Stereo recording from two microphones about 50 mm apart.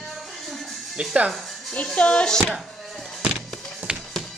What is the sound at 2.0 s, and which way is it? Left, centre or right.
Speech, left.